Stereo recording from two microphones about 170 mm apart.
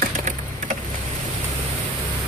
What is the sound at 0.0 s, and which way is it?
Vehicle, 45° right (ahead or behind).